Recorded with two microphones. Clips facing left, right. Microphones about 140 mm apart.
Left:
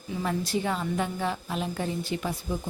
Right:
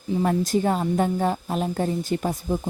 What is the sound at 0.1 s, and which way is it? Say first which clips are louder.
A woman's voice: right 7 dB; 40° right (ahead or behind).